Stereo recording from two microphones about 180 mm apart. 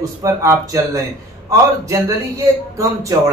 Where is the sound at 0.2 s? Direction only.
20° right (ahead or behind).